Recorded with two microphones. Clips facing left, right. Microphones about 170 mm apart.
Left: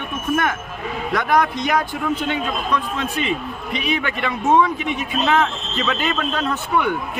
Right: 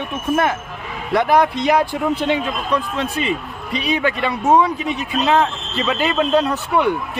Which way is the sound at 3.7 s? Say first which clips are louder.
Right 4 dB; 35° right (ahead or behind).